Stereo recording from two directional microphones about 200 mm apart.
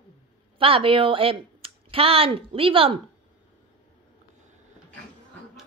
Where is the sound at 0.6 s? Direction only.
25° right (ahead or behind).